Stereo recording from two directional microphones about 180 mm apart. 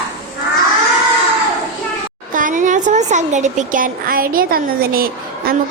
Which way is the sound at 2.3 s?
45° right (ahead or behind).